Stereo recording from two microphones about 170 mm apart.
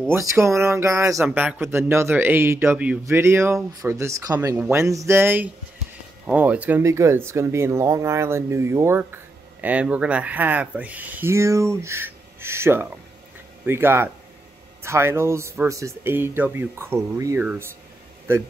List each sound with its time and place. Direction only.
0.1 s speech: 15° right (ahead or behind)